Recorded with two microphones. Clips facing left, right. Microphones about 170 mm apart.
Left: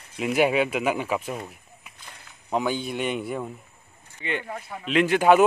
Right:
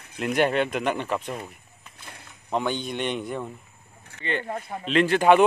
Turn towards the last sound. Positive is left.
turn(degrees=5)  # may be behind; listen again after turning